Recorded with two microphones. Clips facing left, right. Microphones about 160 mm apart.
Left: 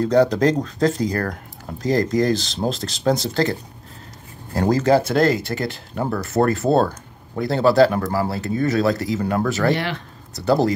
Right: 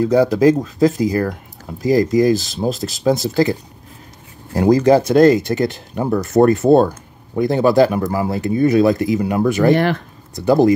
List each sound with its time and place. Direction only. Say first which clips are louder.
0.0 s speech: right 3 dB; 10° right (ahead or behind)
4.6 s speech: right 5 dB; 15° right (ahead or behind)